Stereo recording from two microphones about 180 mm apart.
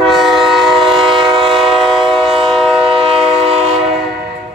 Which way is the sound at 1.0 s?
30° right (ahead or behind).